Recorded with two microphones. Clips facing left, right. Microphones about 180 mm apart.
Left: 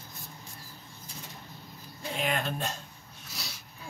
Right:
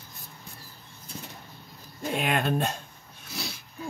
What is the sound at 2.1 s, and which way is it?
Speech, 60° right (ahead or behind).